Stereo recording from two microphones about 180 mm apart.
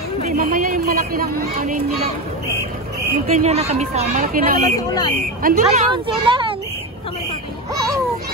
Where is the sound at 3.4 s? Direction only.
35° right (ahead or behind); by 5.6 s 55° right (ahead or behind).